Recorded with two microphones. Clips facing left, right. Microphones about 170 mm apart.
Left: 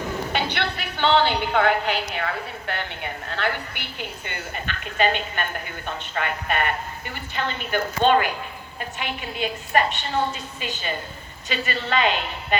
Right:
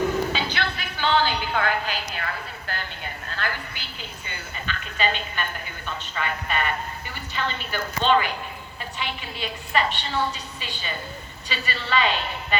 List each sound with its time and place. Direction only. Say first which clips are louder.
0.3 s a woman's voice: left 2 dB; 65° left (ahead or behind)